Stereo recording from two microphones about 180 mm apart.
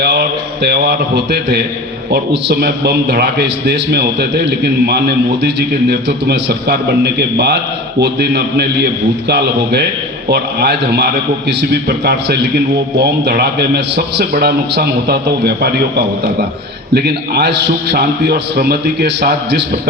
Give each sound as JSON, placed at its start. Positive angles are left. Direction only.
{"t": 0.0, "sound": "a man's voice", "side_deg": -65}